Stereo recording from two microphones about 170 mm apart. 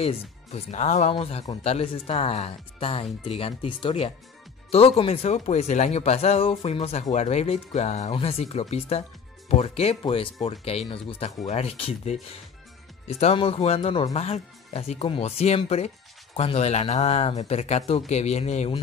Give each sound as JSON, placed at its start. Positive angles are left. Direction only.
{"t": 0.0, "sound": "speech", "side_deg": 35}